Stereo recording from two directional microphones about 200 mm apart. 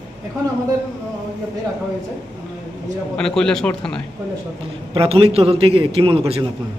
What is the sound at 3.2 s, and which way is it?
Speech, 5° left (ahead or behind).